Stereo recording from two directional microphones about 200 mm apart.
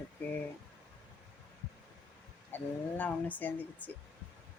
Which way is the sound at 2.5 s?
10° left (ahead or behind).